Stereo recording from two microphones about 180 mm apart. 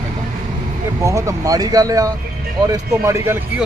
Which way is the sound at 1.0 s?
15° right (ahead or behind).